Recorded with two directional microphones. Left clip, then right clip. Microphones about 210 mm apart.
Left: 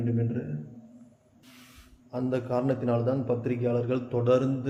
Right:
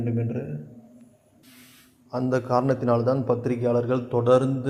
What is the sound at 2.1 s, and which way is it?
A man's voice, 20° right (ahead or behind).